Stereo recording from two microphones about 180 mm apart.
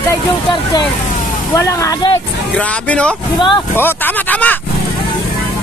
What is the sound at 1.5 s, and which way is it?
Speech, 15° left (ahead or behind).